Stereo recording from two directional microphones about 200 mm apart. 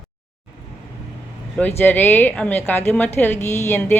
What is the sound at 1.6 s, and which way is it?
Speech, 10° left (ahead or behind).